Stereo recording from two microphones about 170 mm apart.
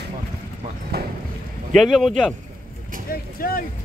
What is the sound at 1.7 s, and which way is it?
Speech, centre (ahead or behind).